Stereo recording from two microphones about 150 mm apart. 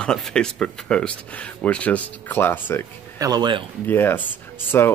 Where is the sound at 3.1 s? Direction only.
25° right (ahead or behind).